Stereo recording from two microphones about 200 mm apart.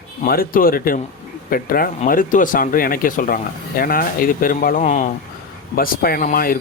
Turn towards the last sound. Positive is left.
turn(degrees=45)  # may be behind; listen again after turning